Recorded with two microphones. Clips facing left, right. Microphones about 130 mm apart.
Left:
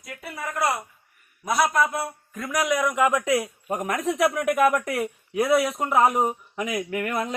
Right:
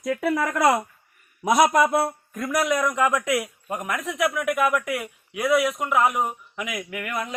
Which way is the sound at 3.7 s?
40° left (ahead or behind).